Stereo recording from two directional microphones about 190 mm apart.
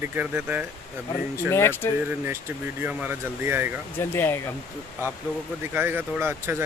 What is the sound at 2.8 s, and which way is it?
Speech, 10° right (ahead or behind).